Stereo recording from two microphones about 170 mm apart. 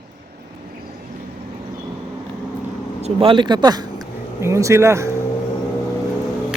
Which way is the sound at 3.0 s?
30° right (ahead or behind).